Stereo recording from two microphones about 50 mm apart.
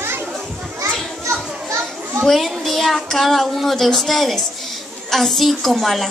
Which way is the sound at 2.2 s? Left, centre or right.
Centre.